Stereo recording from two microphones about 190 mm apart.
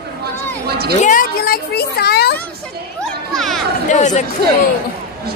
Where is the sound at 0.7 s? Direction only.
55° right (ahead or behind).